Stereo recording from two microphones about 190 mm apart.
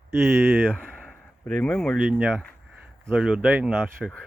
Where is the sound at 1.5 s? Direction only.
5° left (ahead or behind).